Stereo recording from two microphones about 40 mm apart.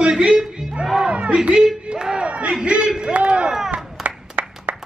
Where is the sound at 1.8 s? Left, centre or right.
Right.